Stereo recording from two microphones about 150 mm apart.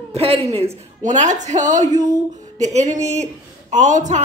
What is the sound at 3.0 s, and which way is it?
Speech, 50° right (ahead or behind).